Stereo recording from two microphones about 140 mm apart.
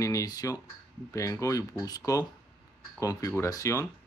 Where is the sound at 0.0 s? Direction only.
25° left (ahead or behind).